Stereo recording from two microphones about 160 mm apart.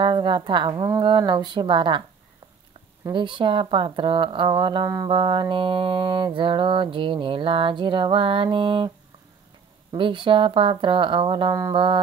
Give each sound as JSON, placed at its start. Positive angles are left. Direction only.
{"t": 0.0, "sound": "speech", "side_deg": -30}
{"t": 3.1, "sound": "speech", "side_deg": -30}
{"t": 9.9, "sound": "speech", "side_deg": -30}